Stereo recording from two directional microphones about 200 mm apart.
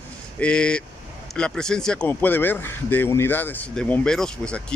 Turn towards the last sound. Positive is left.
turn(degrees=5)  # may be behind; listen again after turning